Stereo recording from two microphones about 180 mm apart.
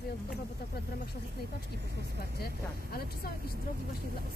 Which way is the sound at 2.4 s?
60° left (ahead or behind).